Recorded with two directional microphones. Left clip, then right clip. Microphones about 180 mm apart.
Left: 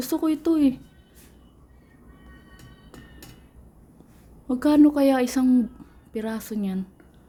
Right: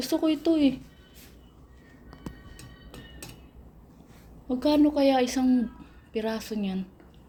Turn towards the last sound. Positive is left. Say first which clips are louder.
# left 1 dB
turn(degrees=35)  # may be behind; listen again after turning